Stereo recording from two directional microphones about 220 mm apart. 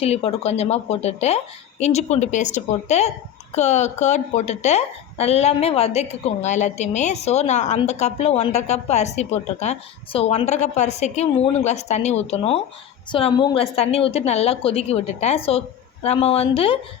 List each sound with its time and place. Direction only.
0.0 s a woman's voice: 25° left (ahead or behind)